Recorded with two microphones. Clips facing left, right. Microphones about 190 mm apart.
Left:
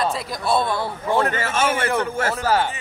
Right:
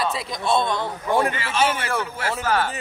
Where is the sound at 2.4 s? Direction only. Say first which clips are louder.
Left 2 dB; 30° left (ahead or behind).